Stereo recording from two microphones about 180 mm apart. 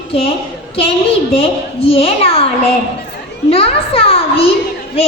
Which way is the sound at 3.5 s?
35° left (ahead or behind).